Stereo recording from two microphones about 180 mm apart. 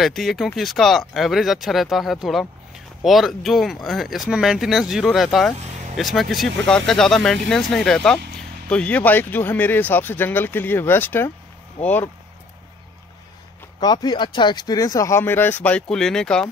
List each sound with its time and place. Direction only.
0.0 s speech: centre (ahead or behind)
13.7 s speech: 20° left (ahead or behind); by 16.4 s 5° left (ahead or behind)